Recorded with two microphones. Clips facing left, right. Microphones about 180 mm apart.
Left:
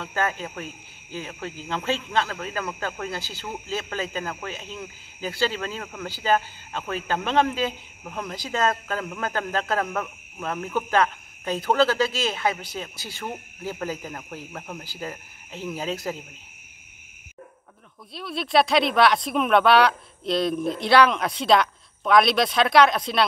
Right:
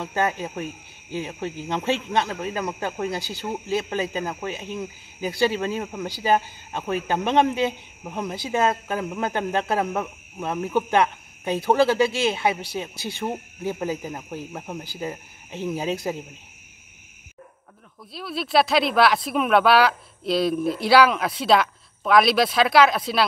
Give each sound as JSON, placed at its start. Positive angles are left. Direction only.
{"t": 0.0, "sound": "speech", "side_deg": -15}
{"t": 18.1, "sound": "speech", "side_deg": 0}